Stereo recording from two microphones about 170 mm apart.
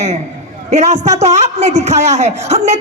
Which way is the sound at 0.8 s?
40° right (ahead or behind).